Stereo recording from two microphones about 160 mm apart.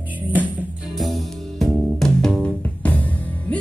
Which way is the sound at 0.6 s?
Centre (ahead or behind).